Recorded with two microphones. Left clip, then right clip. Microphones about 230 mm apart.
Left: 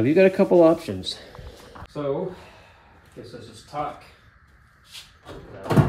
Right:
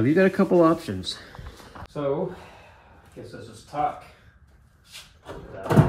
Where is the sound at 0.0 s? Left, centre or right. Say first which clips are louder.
Left 3 dB; right.